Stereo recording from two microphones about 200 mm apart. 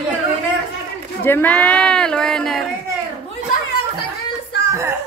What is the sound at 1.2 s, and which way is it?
Speech, 10° left (ahead or behind).